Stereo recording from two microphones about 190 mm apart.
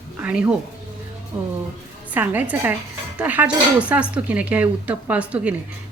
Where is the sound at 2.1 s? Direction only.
10° right (ahead or behind).